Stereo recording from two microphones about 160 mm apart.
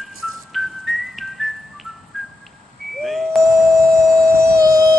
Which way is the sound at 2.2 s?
Centre (ahead or behind).